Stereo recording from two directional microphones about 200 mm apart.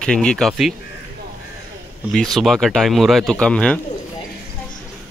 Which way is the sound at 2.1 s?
Centre (ahead or behind).